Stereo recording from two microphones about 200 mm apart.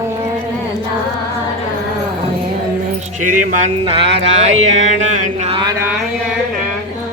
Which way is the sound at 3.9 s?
30° right (ahead or behind).